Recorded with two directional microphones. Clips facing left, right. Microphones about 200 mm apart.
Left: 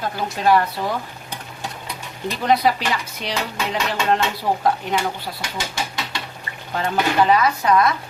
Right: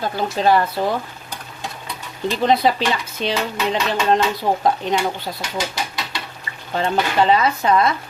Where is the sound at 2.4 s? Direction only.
25° right (ahead or behind).